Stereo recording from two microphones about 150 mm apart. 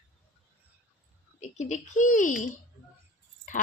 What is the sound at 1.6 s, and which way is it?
Speech, 55° left (ahead or behind).